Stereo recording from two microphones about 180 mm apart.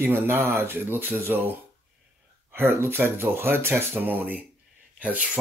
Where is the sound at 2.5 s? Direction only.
15° right (ahead or behind).